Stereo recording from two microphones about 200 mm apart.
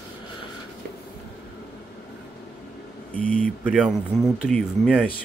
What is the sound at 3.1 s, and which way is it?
Speech, 5° left (ahead or behind).